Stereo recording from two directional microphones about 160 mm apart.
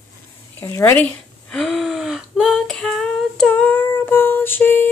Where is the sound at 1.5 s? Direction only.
Centre (ahead or behind).